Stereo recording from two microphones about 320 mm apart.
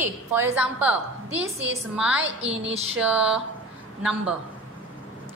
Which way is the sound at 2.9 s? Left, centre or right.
Centre.